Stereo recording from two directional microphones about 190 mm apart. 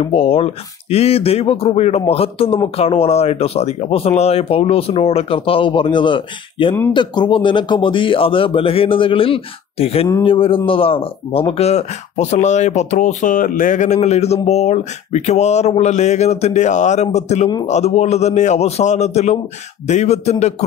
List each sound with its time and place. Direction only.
0.0 s speech: 30° left (ahead or behind)